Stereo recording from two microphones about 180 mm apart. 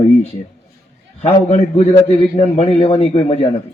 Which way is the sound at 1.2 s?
35° left (ahead or behind).